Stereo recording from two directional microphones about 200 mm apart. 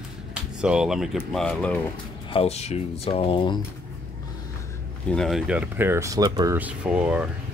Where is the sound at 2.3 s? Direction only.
30° left (ahead or behind).